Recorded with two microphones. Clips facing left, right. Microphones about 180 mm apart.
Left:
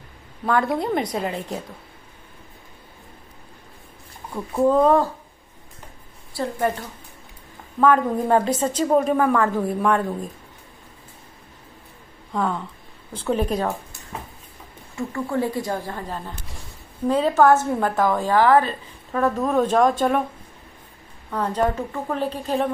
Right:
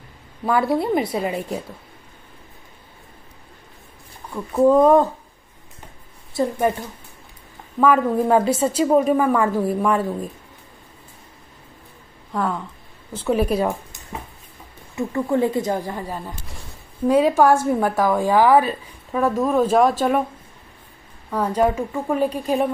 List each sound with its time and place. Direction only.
0.5 s a woman's voice: 5° right (ahead or behind)
4.6 s a woman's voice: 10° right (ahead or behind)
6.4 s speech: 20° right (ahead or behind)
7.8 s a woman's voice: 5° right (ahead or behind)
12.3 s a woman's voice: centre (ahead or behind)
15.0 s a woman's voice: 20° right (ahead or behind)
21.3 s a woman's voice: 10° right (ahead or behind)